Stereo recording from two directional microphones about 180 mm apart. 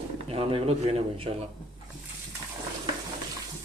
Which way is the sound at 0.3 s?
30° right (ahead or behind).